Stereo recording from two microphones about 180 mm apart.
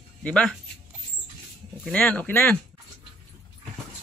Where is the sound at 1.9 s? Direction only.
5° left (ahead or behind).